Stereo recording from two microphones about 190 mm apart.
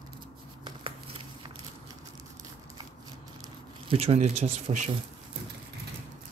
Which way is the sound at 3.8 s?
30° right (ahead or behind).